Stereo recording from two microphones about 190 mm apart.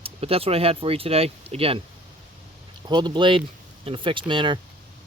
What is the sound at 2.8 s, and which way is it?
Speech, 25° right (ahead or behind).